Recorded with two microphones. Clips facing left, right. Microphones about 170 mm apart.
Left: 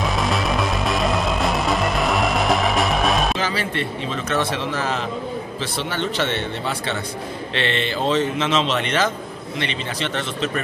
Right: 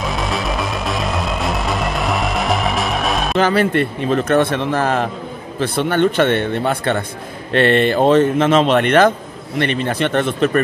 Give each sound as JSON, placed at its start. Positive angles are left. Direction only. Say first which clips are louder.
{"t": 0.0, "sound": "music", "louder": "even", "side_deg": 0}
{"t": 3.3, "sound": "speech", "louder": "right 9 dB", "side_deg": -55}